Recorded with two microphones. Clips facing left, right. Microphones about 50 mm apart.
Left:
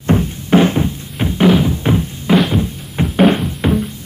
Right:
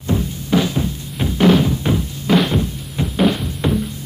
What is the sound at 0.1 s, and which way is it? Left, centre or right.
Music, left.